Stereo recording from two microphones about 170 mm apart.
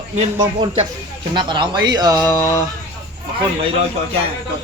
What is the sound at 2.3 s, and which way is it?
Speech, 15° left (ahead or behind).